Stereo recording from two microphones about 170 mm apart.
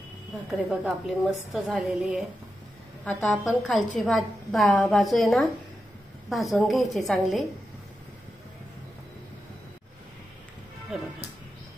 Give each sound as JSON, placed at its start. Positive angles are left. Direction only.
{"t": 0.5, "sound": "a woman's voice", "side_deg": 0}
{"t": 3.1, "sound": "a woman's voice", "side_deg": 10}
{"t": 6.5, "sound": "a woman's voice", "side_deg": 0}